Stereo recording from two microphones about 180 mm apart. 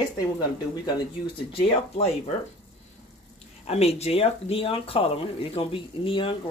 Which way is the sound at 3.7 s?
35° left (ahead or behind).